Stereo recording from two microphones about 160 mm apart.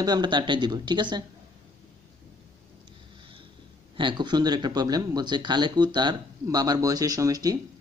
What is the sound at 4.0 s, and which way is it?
Speech, 30° right (ahead or behind).